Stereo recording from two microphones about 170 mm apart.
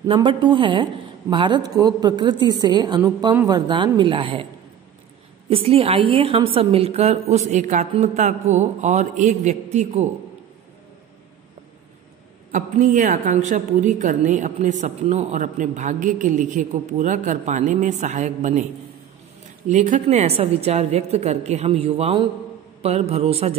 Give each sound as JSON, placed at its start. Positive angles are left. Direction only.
{"t": 0.0, "sound": "a woman's voice", "side_deg": -30}
{"t": 5.5, "sound": "a woman's voice", "side_deg": -35}
{"t": 12.5, "sound": "a woman's voice", "side_deg": -50}
{"t": 19.7, "sound": "a woman's voice", "side_deg": -45}